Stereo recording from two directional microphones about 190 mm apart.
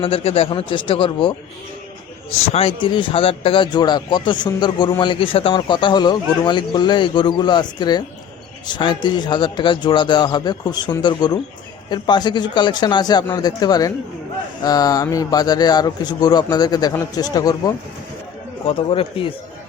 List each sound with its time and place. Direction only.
0.0 s speech: 30° left (ahead or behind)
2.5 s speech: 30° left (ahead or behind)